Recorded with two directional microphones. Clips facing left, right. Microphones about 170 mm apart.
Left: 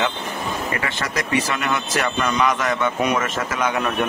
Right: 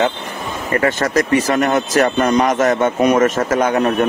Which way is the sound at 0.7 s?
45° right (ahead or behind).